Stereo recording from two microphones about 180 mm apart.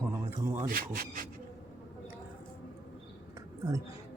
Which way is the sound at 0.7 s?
55° right (ahead or behind).